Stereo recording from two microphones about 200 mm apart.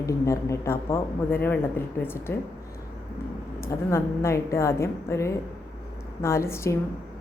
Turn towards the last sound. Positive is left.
turn(degrees=15)  # may be behind; listen again after turning